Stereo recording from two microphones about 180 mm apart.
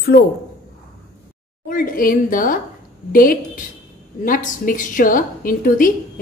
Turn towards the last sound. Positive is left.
turn(degrees=50)  # may be behind; listen again after turning